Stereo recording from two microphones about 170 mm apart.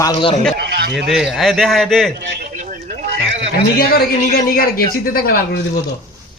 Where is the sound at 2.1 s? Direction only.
75° right (ahead or behind).